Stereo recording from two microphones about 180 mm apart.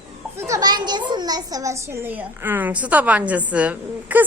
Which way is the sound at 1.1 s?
20° right (ahead or behind).